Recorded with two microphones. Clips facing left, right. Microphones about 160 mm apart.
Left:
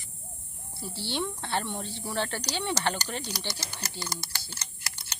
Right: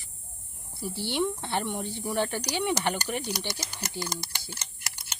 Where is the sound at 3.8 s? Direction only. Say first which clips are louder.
Right 3 dB; 20° right (ahead or behind).